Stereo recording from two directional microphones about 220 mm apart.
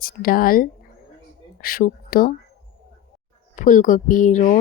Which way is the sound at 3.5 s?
35° left (ahead or behind).